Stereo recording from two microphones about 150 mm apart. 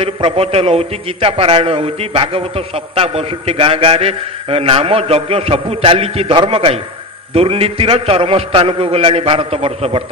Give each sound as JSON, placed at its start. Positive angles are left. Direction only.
{"t": 0.0, "sound": "a man's voice", "side_deg": -40}